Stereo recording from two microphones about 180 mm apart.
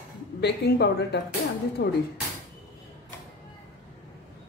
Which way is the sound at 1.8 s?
80° left.